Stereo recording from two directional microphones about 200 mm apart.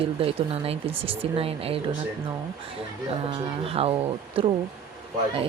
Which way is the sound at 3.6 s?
30° right (ahead or behind).